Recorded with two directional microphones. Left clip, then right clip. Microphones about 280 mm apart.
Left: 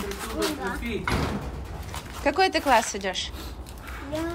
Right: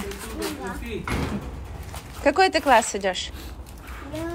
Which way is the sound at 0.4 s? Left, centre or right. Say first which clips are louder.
Left 3 dB; centre.